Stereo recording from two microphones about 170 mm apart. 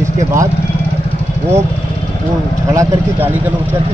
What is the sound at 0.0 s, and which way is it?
Vehicle, 15° right (ahead or behind).